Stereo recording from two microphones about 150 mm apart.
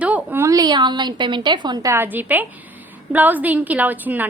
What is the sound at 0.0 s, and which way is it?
A woman's voice, 10° right (ahead or behind).